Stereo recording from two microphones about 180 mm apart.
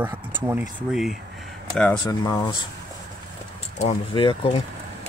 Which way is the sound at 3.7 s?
35° left (ahead or behind).